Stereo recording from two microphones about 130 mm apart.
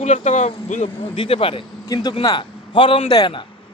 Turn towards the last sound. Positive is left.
turn(degrees=40)  # may be behind; listen again after turning